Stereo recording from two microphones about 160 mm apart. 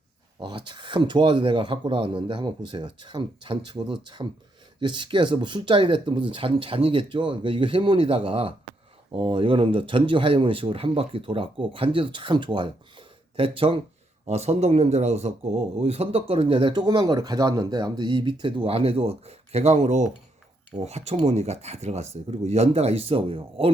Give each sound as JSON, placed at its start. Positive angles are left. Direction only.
{"t": 0.3, "sound": "speech", "side_deg": -30}